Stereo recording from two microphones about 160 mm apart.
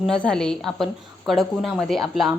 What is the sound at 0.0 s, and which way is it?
A woman's voice, 5° left (ahead or behind).